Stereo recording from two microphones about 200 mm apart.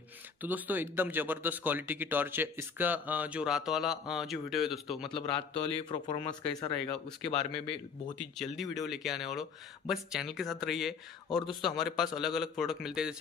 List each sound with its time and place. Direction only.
0.4 s speech: 10° right (ahead or behind)
5.0 s speech: 25° left (ahead or behind)
8.4 s speech: centre (ahead or behind)